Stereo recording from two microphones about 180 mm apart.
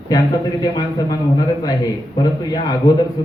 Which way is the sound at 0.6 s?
20° left (ahead or behind).